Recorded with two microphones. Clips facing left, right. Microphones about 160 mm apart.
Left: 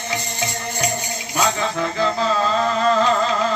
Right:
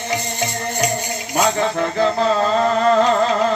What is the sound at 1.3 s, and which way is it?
Music, 50° right (ahead or behind).